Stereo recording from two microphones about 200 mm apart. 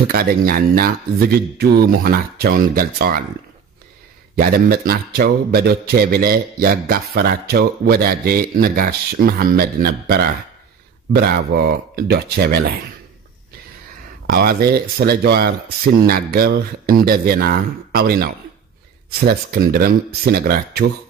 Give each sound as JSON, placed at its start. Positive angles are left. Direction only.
{"t": 0.1, "sound": "a man's voice", "side_deg": -50}
{"t": 4.4, "sound": "a man's voice", "side_deg": -50}
{"t": 14.2, "sound": "a man's voice", "side_deg": -50}